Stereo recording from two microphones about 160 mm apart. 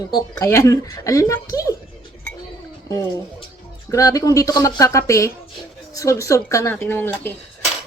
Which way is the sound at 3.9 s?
20° left (ahead or behind).